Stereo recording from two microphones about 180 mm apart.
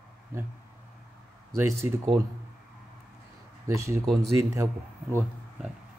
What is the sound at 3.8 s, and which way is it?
Speech, 15° right (ahead or behind).